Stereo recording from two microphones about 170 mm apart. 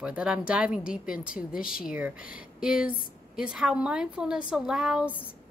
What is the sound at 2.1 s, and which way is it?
Speech, 55° left (ahead or behind).